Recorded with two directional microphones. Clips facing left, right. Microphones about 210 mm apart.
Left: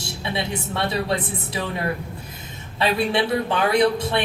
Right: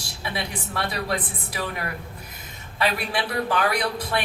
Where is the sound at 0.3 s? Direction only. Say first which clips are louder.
Left 4 dB; 25° left (ahead or behind).